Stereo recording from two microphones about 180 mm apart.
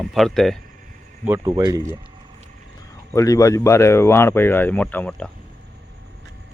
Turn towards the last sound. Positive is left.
turn(degrees=5)  # may be behind; listen again after turning